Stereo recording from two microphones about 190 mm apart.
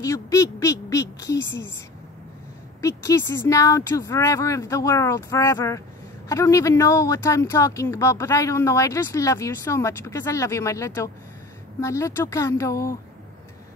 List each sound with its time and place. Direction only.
0.0 s speech: 15° left (ahead or behind)
3.0 s speech: 15° left (ahead or behind)